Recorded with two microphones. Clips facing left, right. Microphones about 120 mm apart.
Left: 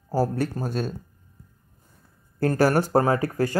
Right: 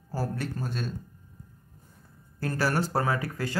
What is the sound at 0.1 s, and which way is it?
Speech, 40° left (ahead or behind).